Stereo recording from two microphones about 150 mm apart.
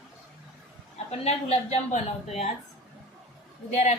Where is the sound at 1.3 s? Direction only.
45° left (ahead or behind).